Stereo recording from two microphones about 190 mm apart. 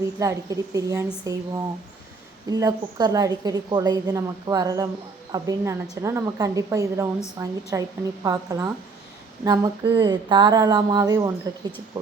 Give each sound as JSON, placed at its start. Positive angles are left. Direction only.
{"t": 0.2, "sound": "a woman's voice", "side_deg": -15}